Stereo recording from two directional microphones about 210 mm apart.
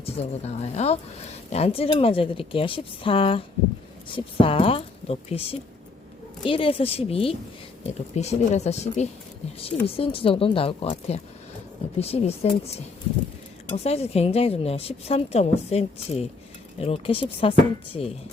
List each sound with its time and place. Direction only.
0.0 s speech: 30° left (ahead or behind)
13.7 s speech: 30° left (ahead or behind)